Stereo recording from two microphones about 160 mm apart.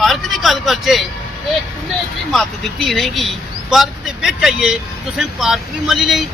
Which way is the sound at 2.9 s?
Centre (ahead or behind).